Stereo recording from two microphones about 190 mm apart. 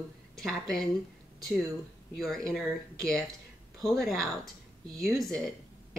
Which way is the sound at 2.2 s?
Centre (ahead or behind).